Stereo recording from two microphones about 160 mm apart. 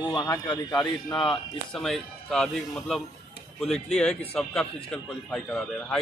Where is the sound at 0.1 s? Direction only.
25° left (ahead or behind).